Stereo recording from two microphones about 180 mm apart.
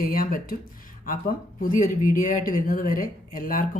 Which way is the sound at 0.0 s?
50° left (ahead or behind).